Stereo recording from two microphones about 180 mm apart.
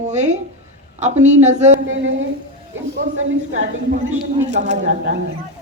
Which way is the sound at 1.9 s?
90° right.